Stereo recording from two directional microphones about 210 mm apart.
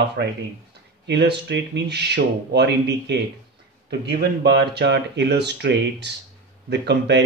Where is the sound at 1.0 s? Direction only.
55° right (ahead or behind).